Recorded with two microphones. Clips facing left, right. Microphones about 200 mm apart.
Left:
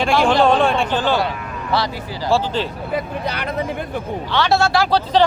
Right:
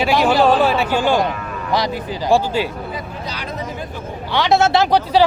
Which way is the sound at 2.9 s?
60° left (ahead or behind).